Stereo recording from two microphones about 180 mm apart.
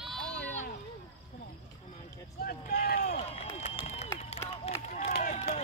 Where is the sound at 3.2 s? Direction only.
35° left (ahead or behind).